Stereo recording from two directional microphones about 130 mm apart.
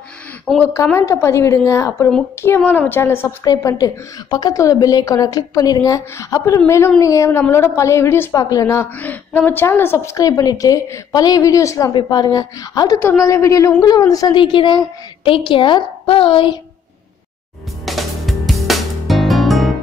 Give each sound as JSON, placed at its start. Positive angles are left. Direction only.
{"t": 0.6, "sound": "a woman's voice", "side_deg": 15}
{"t": 3.4, "sound": "a woman's voice", "side_deg": 30}
{"t": 11.9, "sound": "a woman's voice", "side_deg": 35}
{"t": 17.8, "sound": "music", "side_deg": 0}